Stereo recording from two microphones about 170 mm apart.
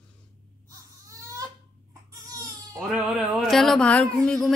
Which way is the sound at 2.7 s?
Centre (ahead or behind).